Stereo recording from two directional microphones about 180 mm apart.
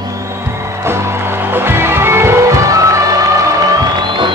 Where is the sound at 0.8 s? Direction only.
15° right (ahead or behind).